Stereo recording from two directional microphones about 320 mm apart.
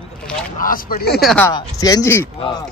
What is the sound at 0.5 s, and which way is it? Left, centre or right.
Speech, left.